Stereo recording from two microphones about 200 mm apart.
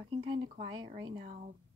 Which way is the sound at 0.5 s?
20° right (ahead or behind).